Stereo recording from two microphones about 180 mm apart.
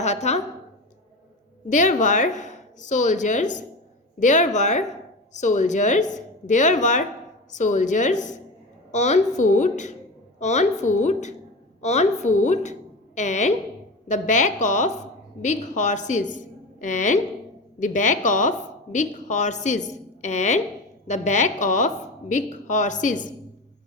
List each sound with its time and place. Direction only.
0.0 s a woman's voice: 40° left (ahead or behind)
1.7 s a woman's voice: 45° left (ahead or behind)